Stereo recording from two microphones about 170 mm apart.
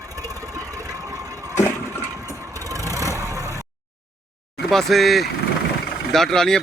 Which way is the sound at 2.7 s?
20° right (ahead or behind).